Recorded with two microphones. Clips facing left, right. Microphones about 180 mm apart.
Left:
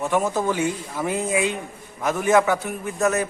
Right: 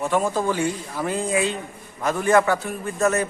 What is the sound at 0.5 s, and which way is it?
A man's voice, 15° left (ahead or behind).